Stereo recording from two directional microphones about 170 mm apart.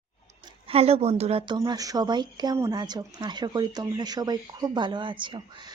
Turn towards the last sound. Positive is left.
turn(degrees=-30)  # may be behind; listen again after turning